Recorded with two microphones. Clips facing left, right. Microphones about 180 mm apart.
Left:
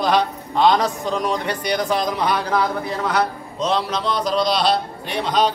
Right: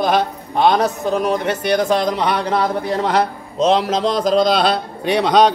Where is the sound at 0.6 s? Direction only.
60° right (ahead or behind).